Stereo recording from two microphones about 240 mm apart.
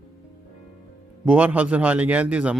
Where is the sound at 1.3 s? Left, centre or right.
Centre.